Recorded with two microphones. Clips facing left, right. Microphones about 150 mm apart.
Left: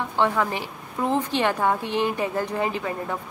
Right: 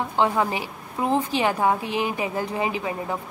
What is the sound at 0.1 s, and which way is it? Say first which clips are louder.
A woman's voice: even; 15° right (ahead or behind).